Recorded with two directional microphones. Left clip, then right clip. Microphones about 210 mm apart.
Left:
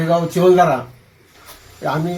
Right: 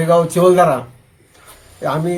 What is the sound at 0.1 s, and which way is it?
Speech, 15° right (ahead or behind).